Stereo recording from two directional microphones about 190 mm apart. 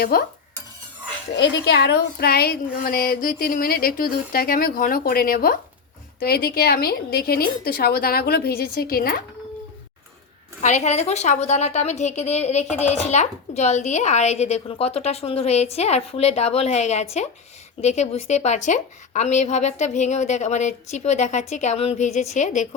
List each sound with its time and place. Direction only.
0.1 s speech: 50° left (ahead or behind)
1.4 s a woman's voice: 60° left (ahead or behind)
10.6 s a woman's voice: 40° left (ahead or behind)